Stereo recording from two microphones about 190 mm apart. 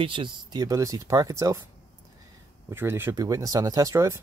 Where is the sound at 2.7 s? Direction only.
10° right (ahead or behind).